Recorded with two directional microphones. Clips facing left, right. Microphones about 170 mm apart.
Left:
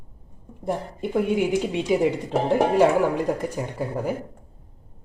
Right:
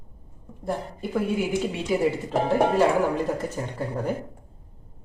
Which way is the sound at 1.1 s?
20° left (ahead or behind).